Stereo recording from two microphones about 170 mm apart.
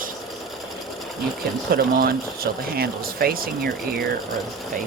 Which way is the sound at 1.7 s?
60° right (ahead or behind).